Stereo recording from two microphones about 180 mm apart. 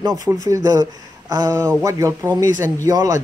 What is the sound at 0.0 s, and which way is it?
Speech, 20° right (ahead or behind).